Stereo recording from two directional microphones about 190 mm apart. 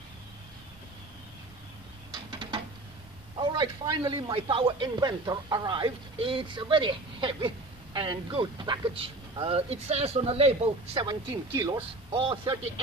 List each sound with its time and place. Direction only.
3.3 s a man's voice: 20° right (ahead or behind)